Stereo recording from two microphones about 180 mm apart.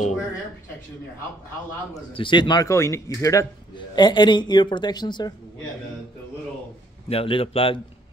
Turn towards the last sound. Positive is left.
turn(degrees=30)  # may be behind; listen again after turning